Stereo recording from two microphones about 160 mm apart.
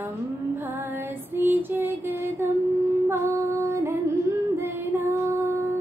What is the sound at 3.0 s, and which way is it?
Music, 15° right (ahead or behind).